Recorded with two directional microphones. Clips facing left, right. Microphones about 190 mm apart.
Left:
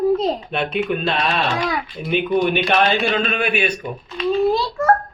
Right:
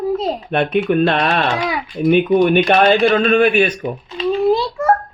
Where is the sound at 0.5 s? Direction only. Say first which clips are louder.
Right 6 dB; 55° right (ahead or behind).